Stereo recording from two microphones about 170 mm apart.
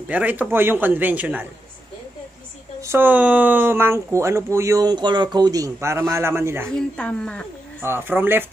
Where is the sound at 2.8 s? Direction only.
15° right (ahead or behind).